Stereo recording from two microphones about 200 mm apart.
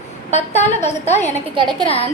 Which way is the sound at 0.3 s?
35° left (ahead or behind).